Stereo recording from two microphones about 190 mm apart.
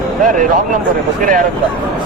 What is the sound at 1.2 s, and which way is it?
Speech, 45° right (ahead or behind).